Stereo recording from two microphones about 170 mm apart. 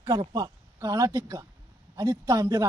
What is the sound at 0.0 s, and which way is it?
Speech, 20° right (ahead or behind).